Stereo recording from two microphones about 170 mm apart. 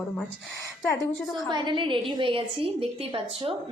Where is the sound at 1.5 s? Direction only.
25° right (ahead or behind).